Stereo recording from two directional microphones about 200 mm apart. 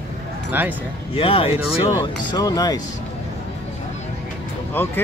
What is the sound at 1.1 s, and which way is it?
Speech, 30° left (ahead or behind).